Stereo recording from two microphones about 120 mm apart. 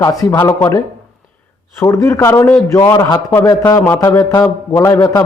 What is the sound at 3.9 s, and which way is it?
A man's voice, 35° left (ahead or behind).